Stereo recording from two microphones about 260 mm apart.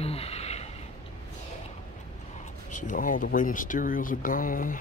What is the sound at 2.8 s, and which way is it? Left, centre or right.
Speech, left.